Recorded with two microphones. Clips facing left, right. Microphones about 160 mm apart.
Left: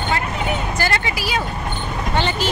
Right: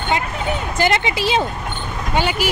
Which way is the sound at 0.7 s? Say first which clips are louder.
Right 4 dB; 20° right (ahead or behind).